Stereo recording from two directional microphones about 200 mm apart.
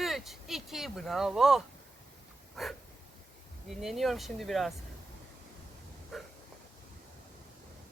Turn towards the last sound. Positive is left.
turn(degrees=0)  # may be behind; listen again after turning